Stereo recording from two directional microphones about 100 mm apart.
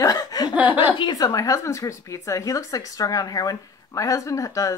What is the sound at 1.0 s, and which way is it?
Speech, 45° left (ahead or behind).